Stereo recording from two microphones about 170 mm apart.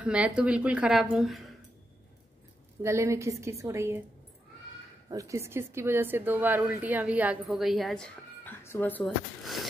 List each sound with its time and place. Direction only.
0.0 s a woman's voice: 5° right (ahead or behind)
2.8 s a woman's voice: 15° right (ahead or behind)
5.1 s a woman's voice: 20° right (ahead or behind); by 9.7 s centre (ahead or behind)